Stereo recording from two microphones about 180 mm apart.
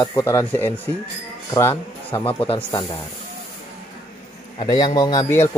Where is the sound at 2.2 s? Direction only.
30° left (ahead or behind).